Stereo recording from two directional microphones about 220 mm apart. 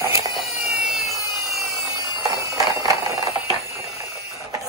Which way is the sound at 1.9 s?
15° right (ahead or behind).